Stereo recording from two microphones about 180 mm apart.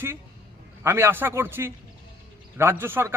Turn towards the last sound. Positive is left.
turn(degrees=-10)  # may be behind; listen again after turning